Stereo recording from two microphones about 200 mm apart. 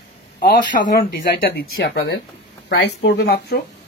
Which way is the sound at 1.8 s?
55° left (ahead or behind).